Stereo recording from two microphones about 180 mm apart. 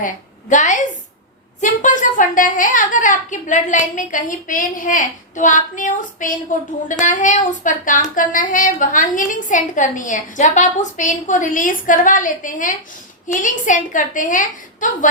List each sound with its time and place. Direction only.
0.0 s a woman's voice: 45° left (ahead or behind)